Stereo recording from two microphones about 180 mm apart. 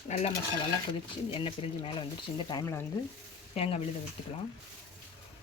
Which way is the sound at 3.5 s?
35° left (ahead or behind).